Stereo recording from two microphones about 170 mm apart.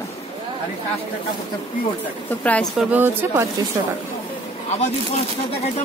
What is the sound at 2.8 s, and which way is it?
Speech, 10° right (ahead or behind).